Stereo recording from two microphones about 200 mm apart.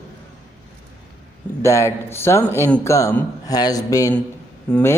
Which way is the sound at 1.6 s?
15° left (ahead or behind).